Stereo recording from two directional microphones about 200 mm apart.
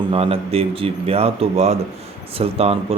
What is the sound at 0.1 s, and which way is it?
A man's voice, 30° right (ahead or behind).